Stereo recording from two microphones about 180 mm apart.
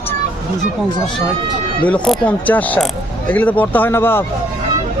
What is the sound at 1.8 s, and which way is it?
Speech, 5° left (ahead or behind).